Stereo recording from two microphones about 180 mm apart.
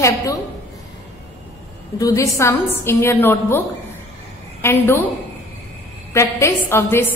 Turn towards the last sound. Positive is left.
turn(degrees=10)  # may be behind; listen again after turning